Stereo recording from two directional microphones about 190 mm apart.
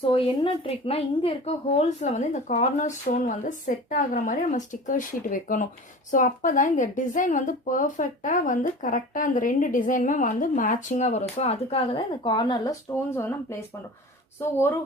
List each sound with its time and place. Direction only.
0.0 s a woman's voice: 30° left (ahead or behind)